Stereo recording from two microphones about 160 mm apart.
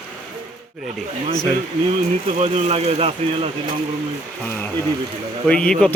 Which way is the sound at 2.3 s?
40° right (ahead or behind).